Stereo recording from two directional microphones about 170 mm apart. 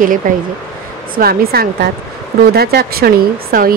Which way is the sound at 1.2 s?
65° right (ahead or behind).